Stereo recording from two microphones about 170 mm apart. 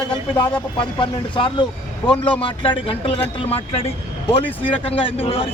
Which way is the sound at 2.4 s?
30° left (ahead or behind).